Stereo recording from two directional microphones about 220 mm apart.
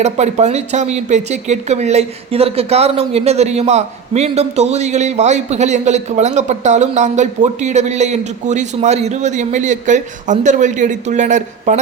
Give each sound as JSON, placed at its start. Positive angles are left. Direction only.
{"t": 0.0, "sound": "speech", "side_deg": -30}